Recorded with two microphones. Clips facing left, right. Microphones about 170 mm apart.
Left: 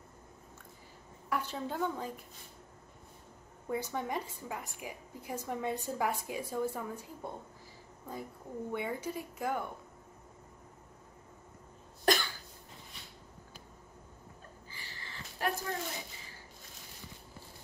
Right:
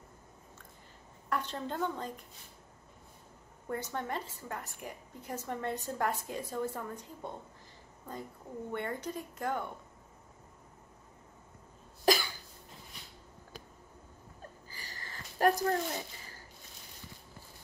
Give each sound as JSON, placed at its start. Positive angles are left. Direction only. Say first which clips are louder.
{"t": 1.3, "sound": "a woman's voice", "louder": "even", "side_deg": 10}
{"t": 3.6, "sound": "a woman's voice", "louder": "left 1 dB", "side_deg": 10}
{"t": 8.7, "sound": "a woman's voice", "louder": "even", "side_deg": 10}
{"t": 12.0, "sound": "cough", "louder": "right 2 dB", "side_deg": -5}
{"t": 14.7, "sound": "a sound", "louder": "right 1 dB", "side_deg": -40}